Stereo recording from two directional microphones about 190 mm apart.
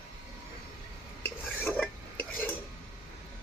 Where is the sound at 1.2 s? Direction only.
10° left (ahead or behind).